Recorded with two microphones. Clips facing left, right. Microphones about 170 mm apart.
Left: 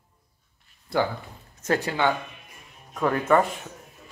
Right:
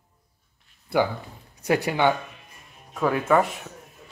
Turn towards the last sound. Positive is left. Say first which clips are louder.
# even
turn(degrees=-5)  # may be behind; listen again after turning